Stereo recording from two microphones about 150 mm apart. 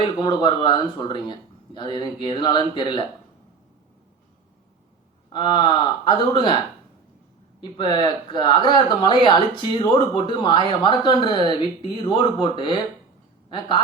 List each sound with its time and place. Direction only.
0.0 s speech: 30° left (ahead or behind)
5.3 s speech: 30° left (ahead or behind)
7.6 s speech: 30° left (ahead or behind)